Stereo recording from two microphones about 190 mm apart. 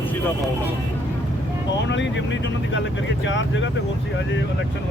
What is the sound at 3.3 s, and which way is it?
Speech, 75° left (ahead or behind).